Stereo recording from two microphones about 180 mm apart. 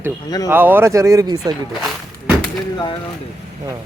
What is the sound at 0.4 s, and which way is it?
Speech, 10° right (ahead or behind).